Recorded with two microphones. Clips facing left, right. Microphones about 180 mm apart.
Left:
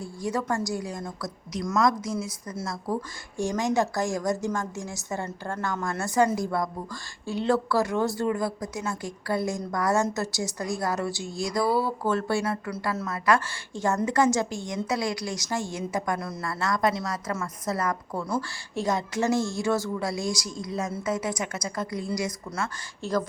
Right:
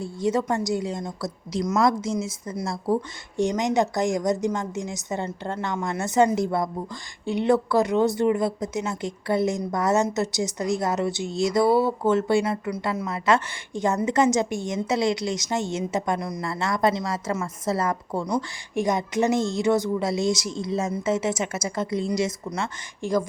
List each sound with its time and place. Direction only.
0.0 s speech: 20° right (ahead or behind)
23.0 s speech: 15° right (ahead or behind)